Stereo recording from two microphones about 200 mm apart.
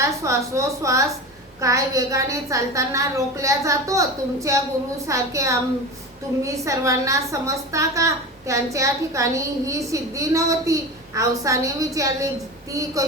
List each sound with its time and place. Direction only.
0.0 s a woman's voice: 15° right (ahead or behind)